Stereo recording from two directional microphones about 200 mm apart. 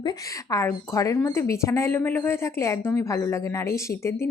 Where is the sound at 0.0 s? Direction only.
20° left (ahead or behind).